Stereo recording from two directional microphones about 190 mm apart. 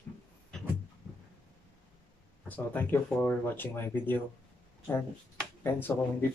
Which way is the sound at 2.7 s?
10° left (ahead or behind).